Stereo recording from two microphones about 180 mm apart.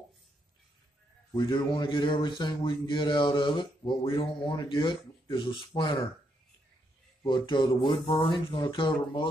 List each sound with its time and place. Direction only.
1.3 s speech: 25° left (ahead or behind)
7.2 s speech: 25° left (ahead or behind)